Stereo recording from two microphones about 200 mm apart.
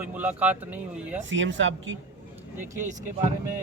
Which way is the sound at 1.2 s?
70° right (ahead or behind).